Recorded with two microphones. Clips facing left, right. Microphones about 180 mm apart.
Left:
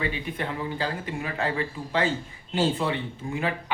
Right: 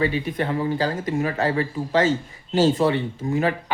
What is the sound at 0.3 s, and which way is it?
Speech, 40° right (ahead or behind).